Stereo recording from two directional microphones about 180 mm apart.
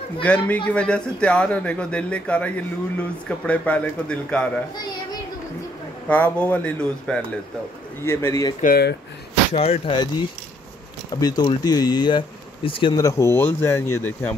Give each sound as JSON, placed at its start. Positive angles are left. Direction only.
{"t": 0.2, "sound": "speech", "side_deg": 5}
{"t": 6.0, "sound": "speech", "side_deg": 5}
{"t": 8.5, "sound": "speech", "side_deg": 55}
{"t": 9.5, "sound": "speech", "side_deg": 35}
{"t": 11.1, "sound": "speech", "side_deg": 20}